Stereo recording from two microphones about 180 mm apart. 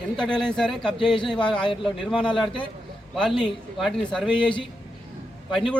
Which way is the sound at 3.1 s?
Centre (ahead or behind).